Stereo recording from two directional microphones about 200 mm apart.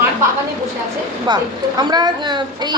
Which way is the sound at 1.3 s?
20° right (ahead or behind).